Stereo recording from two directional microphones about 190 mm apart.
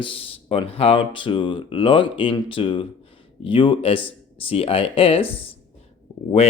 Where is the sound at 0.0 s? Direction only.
30° left (ahead or behind).